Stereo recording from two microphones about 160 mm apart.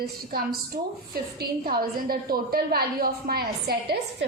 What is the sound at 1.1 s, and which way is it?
A woman's voice, 70° right (ahead or behind).